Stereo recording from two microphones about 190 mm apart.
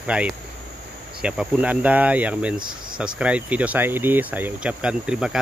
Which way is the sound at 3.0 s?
5° right (ahead or behind).